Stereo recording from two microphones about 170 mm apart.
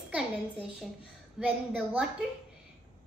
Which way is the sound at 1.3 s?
5° right (ahead or behind).